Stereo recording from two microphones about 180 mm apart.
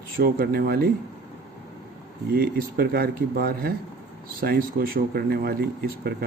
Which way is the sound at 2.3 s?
60° right (ahead or behind).